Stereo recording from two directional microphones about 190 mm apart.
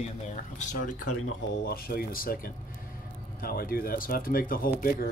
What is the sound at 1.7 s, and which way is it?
Speech, 55° left (ahead or behind).